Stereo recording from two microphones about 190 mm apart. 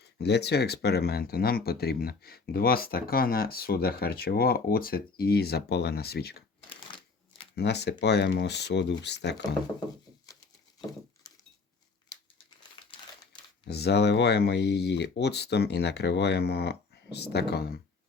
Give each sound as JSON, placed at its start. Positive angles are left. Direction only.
{"t": 0.0, "sound": "speech", "side_deg": 60}
{"t": 6.7, "sound": "shuffling cards", "side_deg": 25}
{"t": 7.5, "sound": "speech", "side_deg": 60}
{"t": 13.7, "sound": "speech", "side_deg": 60}